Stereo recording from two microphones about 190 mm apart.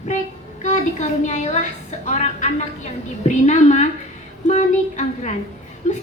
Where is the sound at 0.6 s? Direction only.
40° left (ahead or behind).